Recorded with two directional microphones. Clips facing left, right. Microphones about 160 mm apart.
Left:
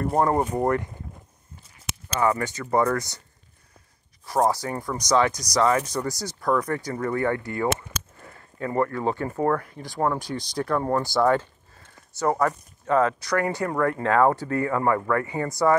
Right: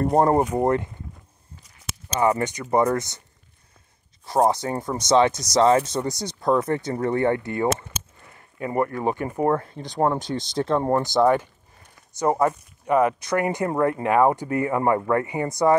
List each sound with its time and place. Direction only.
0.0 s speech: 35° right (ahead or behind)
0.6 s speech: 20° right (ahead or behind)
2.1 s speech: 20° right (ahead or behind)
4.3 s speech: 25° right (ahead or behind)